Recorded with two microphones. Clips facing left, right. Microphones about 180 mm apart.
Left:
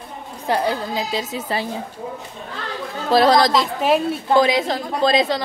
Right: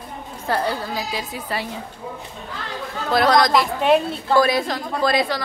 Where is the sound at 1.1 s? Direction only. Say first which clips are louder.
Left 3 dB; 25° left (ahead or behind).